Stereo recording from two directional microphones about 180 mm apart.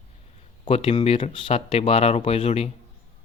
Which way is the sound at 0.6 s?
35° left (ahead or behind).